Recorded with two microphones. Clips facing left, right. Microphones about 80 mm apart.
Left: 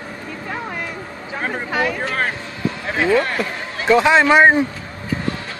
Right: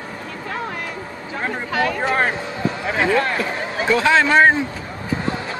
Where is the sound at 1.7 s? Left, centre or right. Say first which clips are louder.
Even; centre.